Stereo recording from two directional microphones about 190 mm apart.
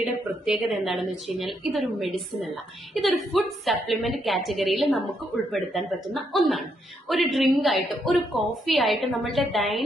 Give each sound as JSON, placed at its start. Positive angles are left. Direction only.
{"t": 0.0, "sound": "a woman's voice", "side_deg": -5}